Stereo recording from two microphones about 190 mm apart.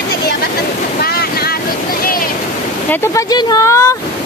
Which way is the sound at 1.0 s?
55° left (ahead or behind).